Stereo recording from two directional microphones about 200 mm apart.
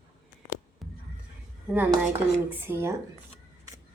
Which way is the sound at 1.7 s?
10° right (ahead or behind).